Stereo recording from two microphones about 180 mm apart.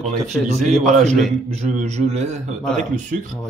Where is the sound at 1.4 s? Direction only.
35° right (ahead or behind).